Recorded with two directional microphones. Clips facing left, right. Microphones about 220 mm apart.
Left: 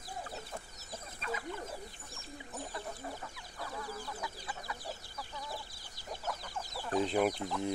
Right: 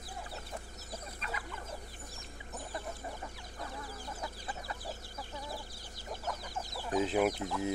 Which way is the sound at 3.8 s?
35° right (ahead or behind).